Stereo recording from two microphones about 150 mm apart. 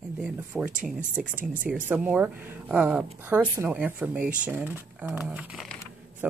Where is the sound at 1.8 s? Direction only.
10° right (ahead or behind).